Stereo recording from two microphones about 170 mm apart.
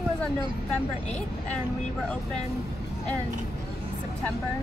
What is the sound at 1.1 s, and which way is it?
Speech, 5° left (ahead or behind).